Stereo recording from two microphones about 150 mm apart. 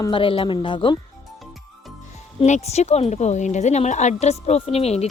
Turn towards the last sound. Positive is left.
turn(degrees=45)  # may be behind; listen again after turning